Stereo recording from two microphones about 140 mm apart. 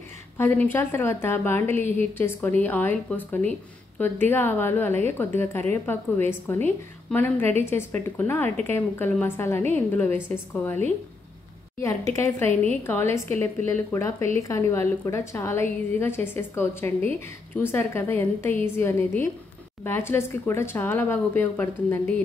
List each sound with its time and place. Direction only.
0.4 s a woman's voice: 15° left (ahead or behind)
11.8 s a woman's voice: 20° left (ahead or behind)